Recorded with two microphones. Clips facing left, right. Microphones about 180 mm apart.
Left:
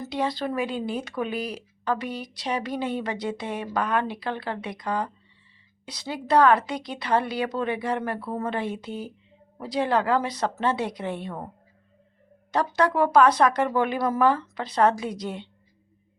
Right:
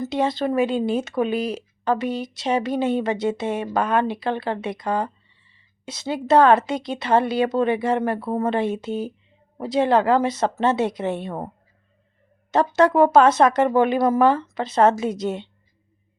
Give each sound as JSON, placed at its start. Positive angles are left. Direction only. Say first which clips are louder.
{"t": 0.0, "sound": "speech", "louder": "right 5 dB", "side_deg": -25}
{"t": 12.5, "sound": "speech", "louder": "right 6 dB", "side_deg": -25}